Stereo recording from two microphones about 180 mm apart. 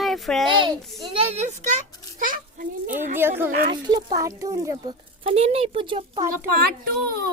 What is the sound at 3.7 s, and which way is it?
Speech, 25° right (ahead or behind).